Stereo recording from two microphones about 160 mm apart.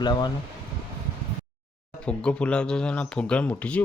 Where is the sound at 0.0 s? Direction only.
25° left (ahead or behind).